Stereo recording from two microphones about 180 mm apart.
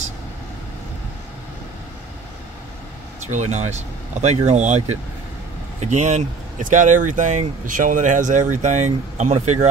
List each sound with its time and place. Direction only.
3.3 s speech: 40° right (ahead or behind)